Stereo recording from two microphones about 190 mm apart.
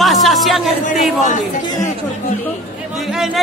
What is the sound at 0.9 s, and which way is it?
Speech, 40° left (ahead or behind).